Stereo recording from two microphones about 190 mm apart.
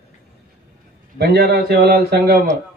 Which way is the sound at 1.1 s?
50° right (ahead or behind).